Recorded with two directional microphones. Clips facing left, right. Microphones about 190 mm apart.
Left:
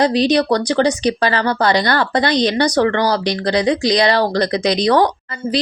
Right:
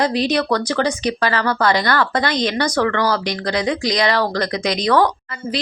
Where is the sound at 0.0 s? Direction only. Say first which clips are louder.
Left 4 dB; 30° left (ahead or behind).